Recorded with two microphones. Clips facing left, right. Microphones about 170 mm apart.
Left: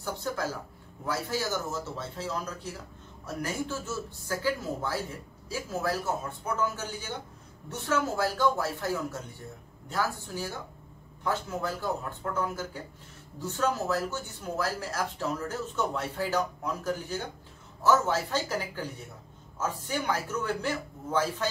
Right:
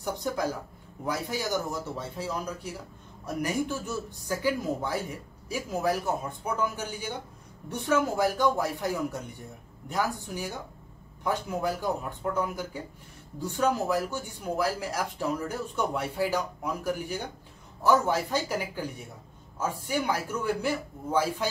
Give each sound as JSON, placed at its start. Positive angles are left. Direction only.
{"t": 0.0, "sound": "speech", "side_deg": -15}